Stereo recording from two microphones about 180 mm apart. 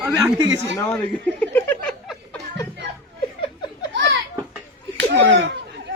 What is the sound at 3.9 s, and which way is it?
Children playing, 80° right.